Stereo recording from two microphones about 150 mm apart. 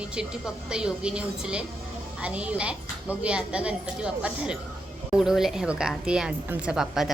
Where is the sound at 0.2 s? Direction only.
5° right (ahead or behind).